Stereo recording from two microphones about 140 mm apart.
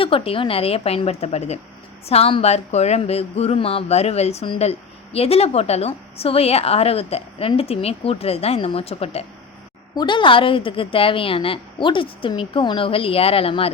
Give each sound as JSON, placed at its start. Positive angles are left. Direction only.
{"t": 0.0, "sound": "a woman's voice", "side_deg": 40}
{"t": 9.9, "sound": "a woman's voice", "side_deg": 30}